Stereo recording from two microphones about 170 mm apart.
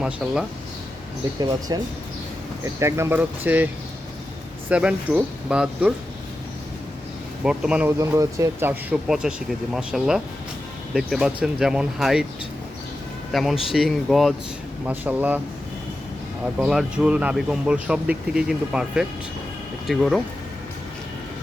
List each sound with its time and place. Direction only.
1.4 s speech: 25° right (ahead or behind)
4.7 s speech: 5° right (ahead or behind)
7.4 s speech: 5° right (ahead or behind)
7.9 s speech: 20° right (ahead or behind)
13.3 s speech: centre (ahead or behind)
16.6 s speech: 5° right (ahead or behind)